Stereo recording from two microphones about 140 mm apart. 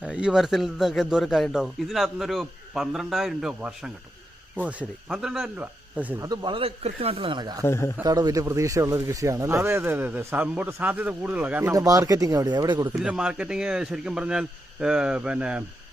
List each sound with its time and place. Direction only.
0.0 s a man's voice: 5° right (ahead or behind)
6.1 s speech: 30° right (ahead or behind)
7.6 s a man's voice: 20° left (ahead or behind)
8.0 s speech: 25° right (ahead or behind); by 11.7 s 10° right (ahead or behind)
11.7 s speech: 25° right (ahead or behind)
12.9 s a man's voice: 5° right (ahead or behind)